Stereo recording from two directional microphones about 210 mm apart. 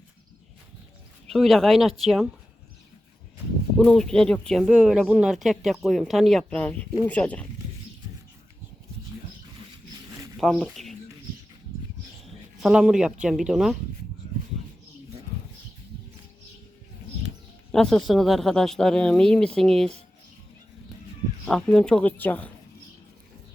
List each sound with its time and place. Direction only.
1.3 s speech: centre (ahead or behind)
3.8 s speech: 5° left (ahead or behind)
9.6 s a sound: 20° right (ahead or behind)
10.3 s speech: centre (ahead or behind)
12.5 s speech: 5° right (ahead or behind)
17.7 s speech: 5° left (ahead or behind)
21.4 s speech: 5° left (ahead or behind)